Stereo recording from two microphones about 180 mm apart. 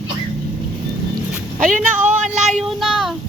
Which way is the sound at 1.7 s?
45° right (ahead or behind).